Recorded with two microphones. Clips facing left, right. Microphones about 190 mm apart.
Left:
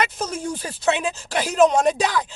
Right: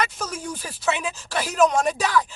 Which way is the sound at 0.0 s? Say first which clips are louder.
Left 3 dB; 25° left (ahead or behind).